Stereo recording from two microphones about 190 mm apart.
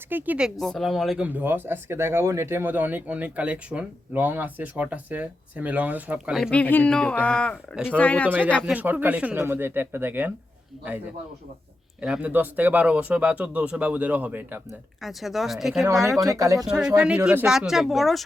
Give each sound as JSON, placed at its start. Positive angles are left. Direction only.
{"t": 0.1, "sound": "speech", "side_deg": -10}
{"t": 8.7, "sound": "speech", "side_deg": -10}
{"t": 11.9, "sound": "speech", "side_deg": -5}
{"t": 15.8, "sound": "speech", "side_deg": -15}
{"t": 16.6, "sound": "speech", "side_deg": -5}